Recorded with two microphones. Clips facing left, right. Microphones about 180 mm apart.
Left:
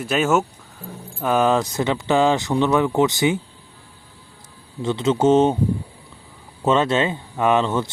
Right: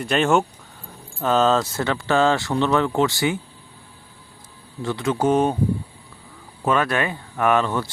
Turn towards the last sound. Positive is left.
turn(degrees=20)  # may be behind; listen again after turning